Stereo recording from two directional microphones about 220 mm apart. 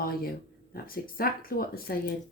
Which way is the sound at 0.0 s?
40° left (ahead or behind).